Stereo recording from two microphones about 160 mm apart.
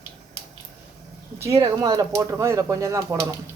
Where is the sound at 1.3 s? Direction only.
20° right (ahead or behind).